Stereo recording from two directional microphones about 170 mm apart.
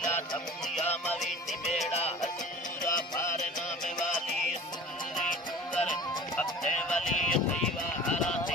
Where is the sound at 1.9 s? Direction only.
40° left (ahead or behind).